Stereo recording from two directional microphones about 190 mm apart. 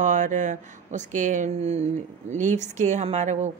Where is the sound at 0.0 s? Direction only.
40° right (ahead or behind).